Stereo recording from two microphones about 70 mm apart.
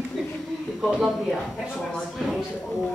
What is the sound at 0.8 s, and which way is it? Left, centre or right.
Speech, centre.